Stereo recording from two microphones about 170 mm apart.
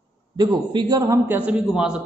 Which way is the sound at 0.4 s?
25° right (ahead or behind).